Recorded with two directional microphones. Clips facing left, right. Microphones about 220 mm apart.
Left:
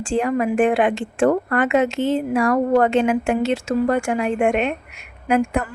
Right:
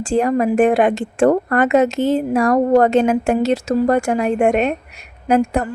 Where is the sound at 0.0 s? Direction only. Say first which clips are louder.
Right 4 dB; 40° right (ahead or behind).